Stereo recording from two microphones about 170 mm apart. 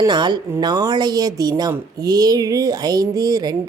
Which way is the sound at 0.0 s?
25° right (ahead or behind).